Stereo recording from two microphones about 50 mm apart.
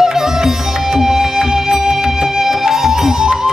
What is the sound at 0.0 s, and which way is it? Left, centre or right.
Music, centre.